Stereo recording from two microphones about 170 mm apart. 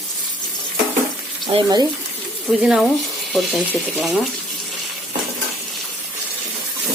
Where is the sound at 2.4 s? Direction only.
Centre (ahead or behind).